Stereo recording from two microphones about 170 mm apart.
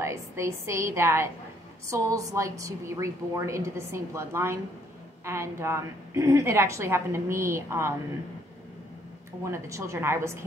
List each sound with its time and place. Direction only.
0.0 s a woman's voice: 15° right (ahead or behind)
9.4 s a woman's voice: 15° right (ahead or behind)